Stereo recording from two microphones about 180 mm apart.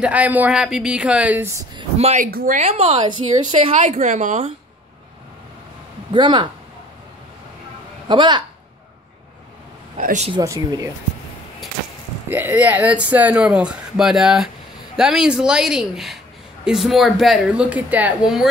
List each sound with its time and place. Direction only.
0.0 s speech: 10° right (ahead or behind)
1.8 s a woman's voice: 35° right (ahead or behind)
2.3 s a woman's voice: 45° right (ahead or behind); by 3.7 s 30° right (ahead or behind)
3.8 s a woman's voice: 40° right (ahead or behind)
6.1 s speech: 25° right (ahead or behind)
8.1 s speech: 25° right (ahead or behind)
10.0 s a woman's voice: 40° right (ahead or behind)
10.3 s speech: 20° right (ahead or behind)
12.3 s a woman's voice: 10° right (ahead or behind)